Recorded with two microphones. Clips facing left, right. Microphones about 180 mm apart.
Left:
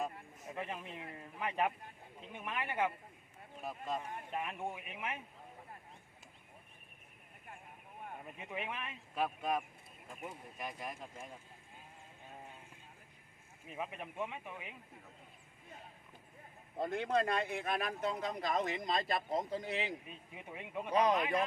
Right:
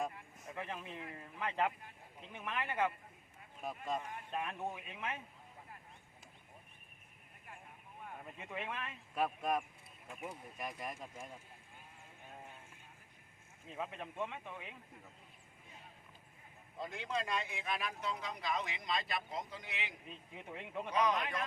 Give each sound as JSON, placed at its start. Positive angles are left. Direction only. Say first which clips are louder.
{"t": 0.5, "sound": "speech", "louder": "left 1 dB", "side_deg": 15}
{"t": 3.6, "sound": "speech", "louder": "even", "side_deg": 0}
{"t": 4.3, "sound": "speech", "louder": "even", "side_deg": 15}
{"t": 8.4, "sound": "speech", "louder": "left 1 dB", "side_deg": 15}
{"t": 9.1, "sound": "speech", "louder": "even", "side_deg": 0}
{"t": 13.7, "sound": "speech", "louder": "even", "side_deg": 15}
{"t": 16.7, "sound": "speech", "louder": "left 7 dB", "side_deg": 55}
{"t": 20.3, "sound": "speech", "louder": "left 1 dB", "side_deg": 10}
{"t": 20.9, "sound": "a man's voice", "louder": "left 3 dB", "side_deg": 35}